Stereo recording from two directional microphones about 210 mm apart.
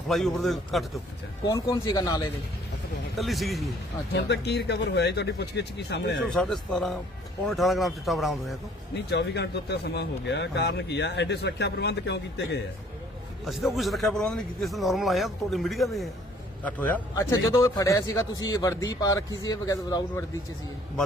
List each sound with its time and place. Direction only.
0.1 s a man's voice: centre (ahead or behind)
1.5 s a man's voice: 20° left (ahead or behind)
3.2 s a man's voice: centre (ahead or behind)
4.1 s speech: 50° left (ahead or behind)
6.3 s a man's voice: centre (ahead or behind)
9.0 s speech: 55° left (ahead or behind)
13.4 s a man's voice: centre (ahead or behind); by 20.2 s 15° left (ahead or behind)